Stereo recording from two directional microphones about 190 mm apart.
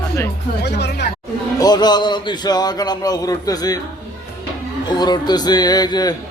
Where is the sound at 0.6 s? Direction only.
65° left (ahead or behind).